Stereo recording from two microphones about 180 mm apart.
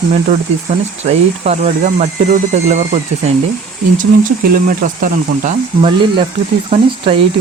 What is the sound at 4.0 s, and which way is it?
Speech, 50° right (ahead or behind).